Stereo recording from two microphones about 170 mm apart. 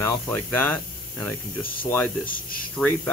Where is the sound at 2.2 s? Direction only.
55° left (ahead or behind).